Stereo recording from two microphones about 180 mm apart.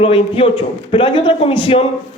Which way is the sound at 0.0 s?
30° left (ahead or behind).